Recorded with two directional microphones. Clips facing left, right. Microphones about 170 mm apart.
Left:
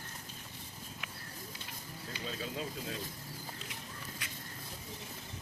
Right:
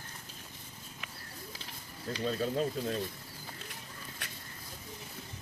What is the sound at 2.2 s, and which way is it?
Speech, 50° right (ahead or behind).